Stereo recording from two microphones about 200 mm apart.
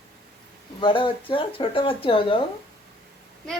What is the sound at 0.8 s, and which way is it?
Speech, 25° left (ahead or behind).